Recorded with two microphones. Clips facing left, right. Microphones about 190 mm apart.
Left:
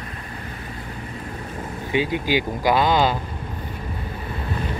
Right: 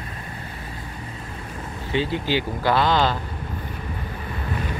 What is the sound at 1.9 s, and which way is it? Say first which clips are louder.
Speech: left 2 dB; 15° left (ahead or behind).